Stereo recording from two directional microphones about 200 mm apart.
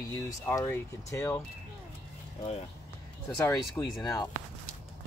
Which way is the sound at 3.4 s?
15° left (ahead or behind).